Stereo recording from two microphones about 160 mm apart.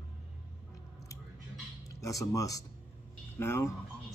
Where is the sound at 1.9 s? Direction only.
20° left (ahead or behind).